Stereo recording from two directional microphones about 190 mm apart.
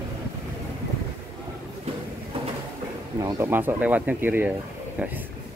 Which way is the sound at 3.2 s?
15° right (ahead or behind).